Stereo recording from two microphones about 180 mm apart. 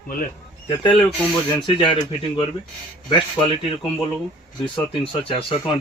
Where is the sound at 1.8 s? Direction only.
25° left (ahead or behind).